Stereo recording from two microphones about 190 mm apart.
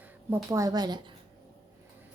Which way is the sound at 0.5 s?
20° right (ahead or behind).